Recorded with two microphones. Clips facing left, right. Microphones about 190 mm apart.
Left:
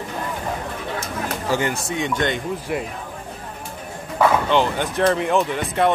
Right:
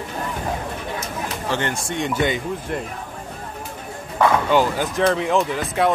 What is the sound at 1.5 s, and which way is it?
Speech, 10° left (ahead or behind).